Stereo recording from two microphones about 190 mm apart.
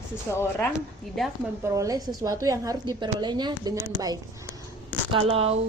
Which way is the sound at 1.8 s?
20° right (ahead or behind).